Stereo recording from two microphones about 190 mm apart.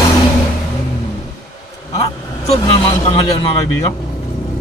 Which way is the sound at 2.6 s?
25° left (ahead or behind).